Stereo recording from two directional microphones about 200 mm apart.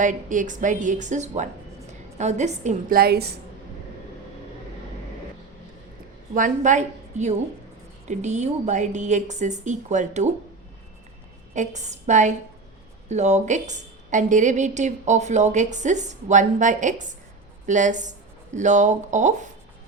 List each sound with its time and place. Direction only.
0.0 s a woman's voice: 40° right (ahead or behind)
6.3 s a woman's voice: 40° right (ahead or behind)
11.5 s a woman's voice: 35° right (ahead or behind)